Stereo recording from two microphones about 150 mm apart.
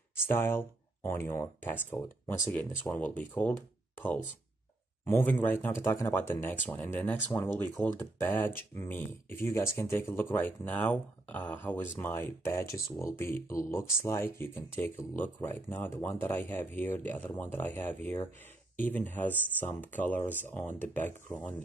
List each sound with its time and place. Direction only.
0.3 s speech: 15° left (ahead or behind)
2.5 s speech: 10° left (ahead or behind)
5.0 s speech: 15° left (ahead or behind)